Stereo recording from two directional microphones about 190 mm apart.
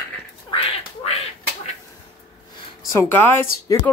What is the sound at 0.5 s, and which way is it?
Duck, 30° left (ahead or behind).